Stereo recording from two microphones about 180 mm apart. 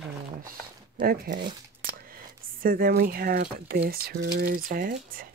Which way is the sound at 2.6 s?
55° right (ahead or behind).